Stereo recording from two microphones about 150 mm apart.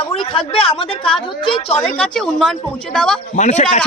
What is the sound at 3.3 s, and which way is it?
Speech, 50° left (ahead or behind).